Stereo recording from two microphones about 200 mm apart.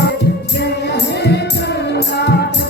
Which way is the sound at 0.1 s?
55° left (ahead or behind).